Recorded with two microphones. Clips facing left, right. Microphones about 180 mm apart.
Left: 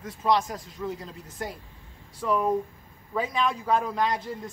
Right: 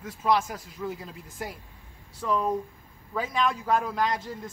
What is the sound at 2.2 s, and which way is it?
Speech, 5° left (ahead or behind).